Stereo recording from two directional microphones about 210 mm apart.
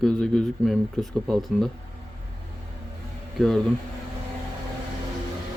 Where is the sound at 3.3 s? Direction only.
Centre (ahead or behind).